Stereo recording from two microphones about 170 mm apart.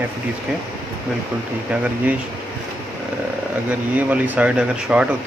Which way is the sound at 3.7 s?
10° right (ahead or behind).